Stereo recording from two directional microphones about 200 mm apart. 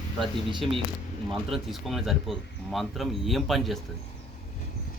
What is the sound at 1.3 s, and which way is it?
Speech, centre (ahead or behind).